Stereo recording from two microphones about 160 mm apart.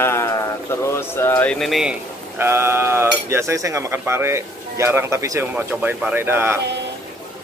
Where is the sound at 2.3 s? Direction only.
15° right (ahead or behind).